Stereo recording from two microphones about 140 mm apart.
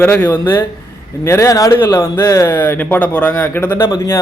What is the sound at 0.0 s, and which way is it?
A man's voice, 15° left (ahead or behind).